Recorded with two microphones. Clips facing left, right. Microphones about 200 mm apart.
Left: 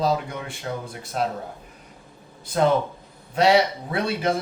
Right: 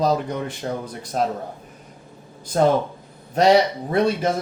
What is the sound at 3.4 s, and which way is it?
Speech, 45° right (ahead or behind).